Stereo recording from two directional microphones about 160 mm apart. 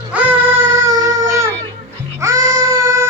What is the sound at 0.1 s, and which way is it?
Baby cry, 10° right (ahead or behind).